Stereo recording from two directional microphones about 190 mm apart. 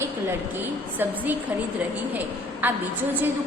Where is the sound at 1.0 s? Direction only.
10° right (ahead or behind).